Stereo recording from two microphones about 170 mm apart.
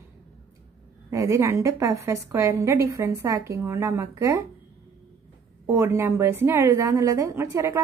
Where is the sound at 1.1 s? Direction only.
15° right (ahead or behind).